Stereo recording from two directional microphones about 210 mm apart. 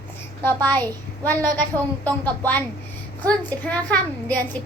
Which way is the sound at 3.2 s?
5° left (ahead or behind).